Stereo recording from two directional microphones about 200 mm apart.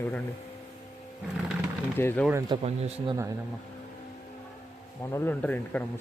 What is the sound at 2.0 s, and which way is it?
Speech, 10° left (ahead or behind).